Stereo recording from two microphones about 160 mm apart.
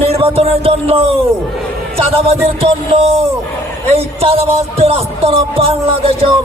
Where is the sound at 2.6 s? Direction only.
35° right (ahead or behind).